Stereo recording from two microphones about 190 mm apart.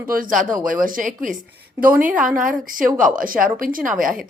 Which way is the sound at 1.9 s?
10° right (ahead or behind).